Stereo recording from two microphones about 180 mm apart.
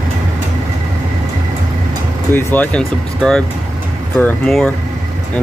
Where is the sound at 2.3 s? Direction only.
10° left (ahead or behind).